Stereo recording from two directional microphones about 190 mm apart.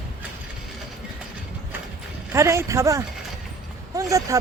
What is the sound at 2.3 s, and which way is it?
A man's voice, 15° right (ahead or behind).